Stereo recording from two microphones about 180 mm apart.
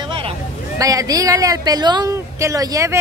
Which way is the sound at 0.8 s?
20° right (ahead or behind).